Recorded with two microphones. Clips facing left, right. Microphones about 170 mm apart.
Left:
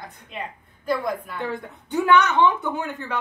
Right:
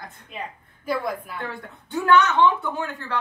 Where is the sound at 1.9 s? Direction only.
15° left (ahead or behind).